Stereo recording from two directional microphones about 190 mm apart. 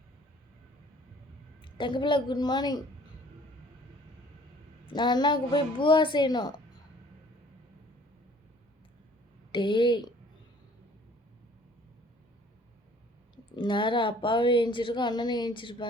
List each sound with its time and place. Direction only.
1.6 s a woman's voice: 25° left (ahead or behind)
4.9 s a woman's voice: 25° left (ahead or behind)
9.5 s a woman's voice: 25° left (ahead or behind)
13.3 s a woman's voice: 25° left (ahead or behind)